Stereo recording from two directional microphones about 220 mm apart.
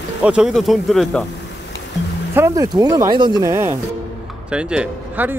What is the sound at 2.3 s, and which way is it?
Speech, 15° right (ahead or behind).